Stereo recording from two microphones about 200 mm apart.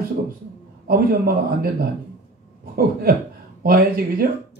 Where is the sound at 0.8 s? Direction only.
50° right (ahead or behind).